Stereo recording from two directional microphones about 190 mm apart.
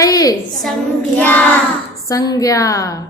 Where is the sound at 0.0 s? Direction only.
20° left (ahead or behind).